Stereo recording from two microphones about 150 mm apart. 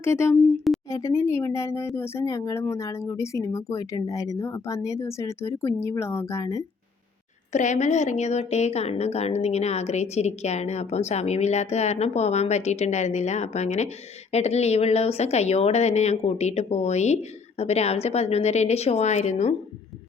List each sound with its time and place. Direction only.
0.0 s speech: 15° left (ahead or behind)
0.9 s speech: 20° left (ahead or behind)
7.5 s a woman's voice: 50° left (ahead or behind)